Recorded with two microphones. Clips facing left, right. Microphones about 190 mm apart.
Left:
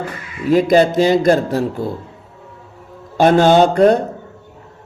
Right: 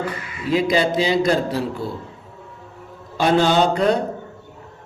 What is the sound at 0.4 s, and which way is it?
A man's voice, 50° left (ahead or behind).